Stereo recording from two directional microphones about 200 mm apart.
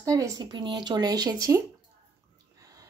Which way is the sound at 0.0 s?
15° right (ahead or behind).